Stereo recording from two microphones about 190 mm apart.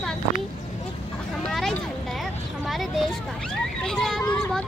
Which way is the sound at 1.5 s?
Centre (ahead or behind).